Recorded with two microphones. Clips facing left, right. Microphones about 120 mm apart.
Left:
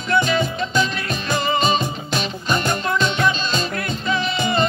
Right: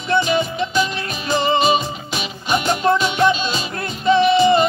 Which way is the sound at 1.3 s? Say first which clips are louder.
Right 4 dB; 25° right (ahead or behind).